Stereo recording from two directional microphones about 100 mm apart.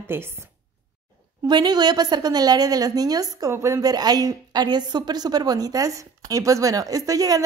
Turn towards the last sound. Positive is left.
turn(degrees=-35)  # may be behind; listen again after turning